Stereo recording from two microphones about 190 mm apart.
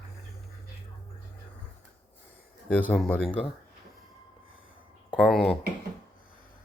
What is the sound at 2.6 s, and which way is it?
Speech, 10° left (ahead or behind).